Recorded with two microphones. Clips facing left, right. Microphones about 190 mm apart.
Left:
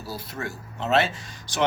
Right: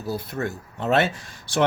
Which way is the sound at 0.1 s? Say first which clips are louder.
Right 6 dB; 55° right (ahead or behind).